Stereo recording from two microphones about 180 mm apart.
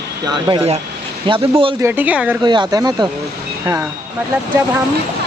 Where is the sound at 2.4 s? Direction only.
25° right (ahead or behind).